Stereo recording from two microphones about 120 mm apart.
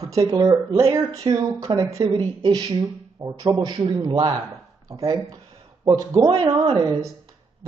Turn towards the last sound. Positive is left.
turn(degrees=-40)  # may be behind; listen again after turning